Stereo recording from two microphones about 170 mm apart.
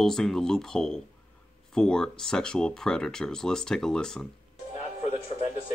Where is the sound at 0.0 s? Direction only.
5° left (ahead or behind).